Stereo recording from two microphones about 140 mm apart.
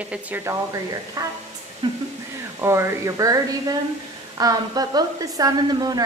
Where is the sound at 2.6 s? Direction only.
20° right (ahead or behind).